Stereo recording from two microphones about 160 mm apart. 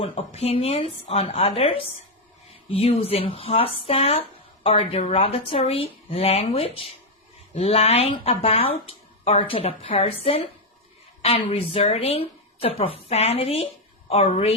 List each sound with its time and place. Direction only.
0.0 s speech: 40° left (ahead or behind)